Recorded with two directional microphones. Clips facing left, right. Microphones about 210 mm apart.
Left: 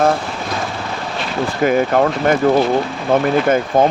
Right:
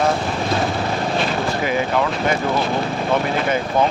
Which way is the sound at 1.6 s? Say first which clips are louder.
Left 8 dB; 50° left (ahead or behind).